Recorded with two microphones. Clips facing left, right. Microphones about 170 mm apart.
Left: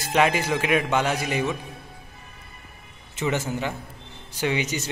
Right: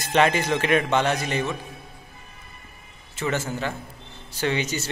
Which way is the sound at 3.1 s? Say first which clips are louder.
Left 1 dB; 15° left (ahead or behind).